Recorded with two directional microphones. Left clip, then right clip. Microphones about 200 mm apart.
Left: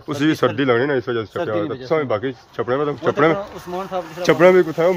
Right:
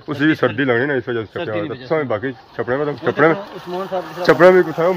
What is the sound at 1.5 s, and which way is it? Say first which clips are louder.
Speech: left 1 dB; 25° left (ahead or behind).